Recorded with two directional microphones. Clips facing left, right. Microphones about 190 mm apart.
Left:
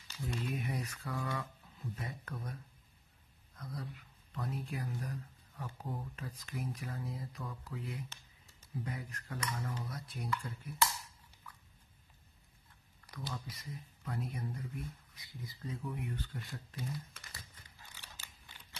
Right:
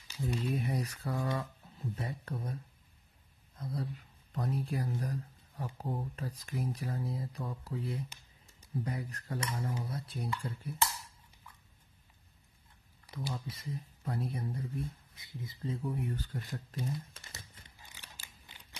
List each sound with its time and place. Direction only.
0.2 s a sound: 35° right (ahead or behind)
1.8 s speech: 30° right (ahead or behind)
3.5 s speech: 30° right (ahead or behind)
5.8 s mantra: 35° right (ahead or behind)
9.5 s speech: 30° right (ahead or behind)
10.4 s mantra: 30° right (ahead or behind)
13.3 s speech: 25° right (ahead or behind)